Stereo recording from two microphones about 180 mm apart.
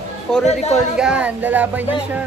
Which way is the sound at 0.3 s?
5° left (ahead or behind).